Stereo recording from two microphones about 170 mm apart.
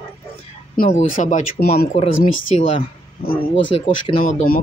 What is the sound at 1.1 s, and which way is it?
Speech, 50° left (ahead or behind).